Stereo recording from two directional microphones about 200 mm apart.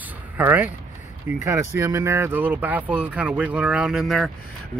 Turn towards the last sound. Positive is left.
turn(degrees=0)  # may be behind; listen again after turning